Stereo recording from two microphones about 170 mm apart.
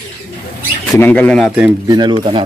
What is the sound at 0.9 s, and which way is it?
Speech, 10° left (ahead or behind).